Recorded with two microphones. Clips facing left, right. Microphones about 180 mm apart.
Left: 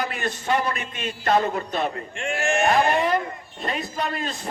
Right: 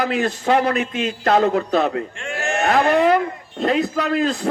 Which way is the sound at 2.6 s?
70° right (ahead or behind).